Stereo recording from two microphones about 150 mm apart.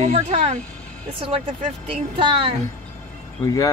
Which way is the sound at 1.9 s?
40° right (ahead or behind).